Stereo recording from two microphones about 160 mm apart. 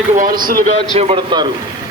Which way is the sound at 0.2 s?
65° right (ahead or behind).